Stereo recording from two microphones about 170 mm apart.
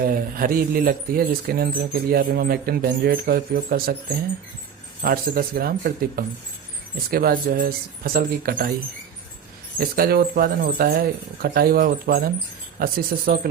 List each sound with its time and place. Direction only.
0.0 s speech: 60° right (ahead or behind)
5.0 s speech: 60° right (ahead or behind)
9.8 s speech: 60° right (ahead or behind)